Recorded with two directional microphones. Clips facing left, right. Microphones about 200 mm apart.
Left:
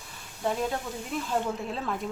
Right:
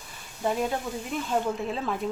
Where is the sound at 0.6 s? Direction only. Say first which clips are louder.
Right 2 dB; centre (ahead or behind).